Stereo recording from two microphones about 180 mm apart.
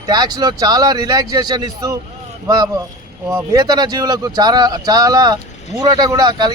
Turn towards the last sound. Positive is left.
turn(degrees=-25)  # may be behind; listen again after turning